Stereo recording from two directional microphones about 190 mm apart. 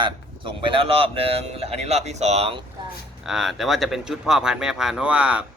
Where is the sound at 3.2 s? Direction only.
Centre (ahead or behind).